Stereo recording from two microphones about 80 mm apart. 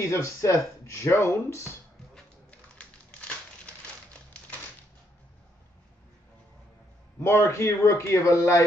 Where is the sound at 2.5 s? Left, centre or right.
Centre.